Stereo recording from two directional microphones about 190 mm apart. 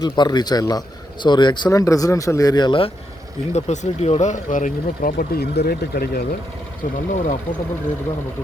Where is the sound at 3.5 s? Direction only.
35° left (ahead or behind); by 6.2 s 55° left (ahead or behind).